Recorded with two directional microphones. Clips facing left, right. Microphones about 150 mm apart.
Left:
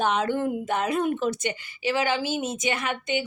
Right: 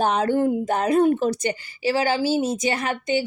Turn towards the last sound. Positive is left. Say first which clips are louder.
# right 4 dB
turn(degrees=-35)  # may be behind; listen again after turning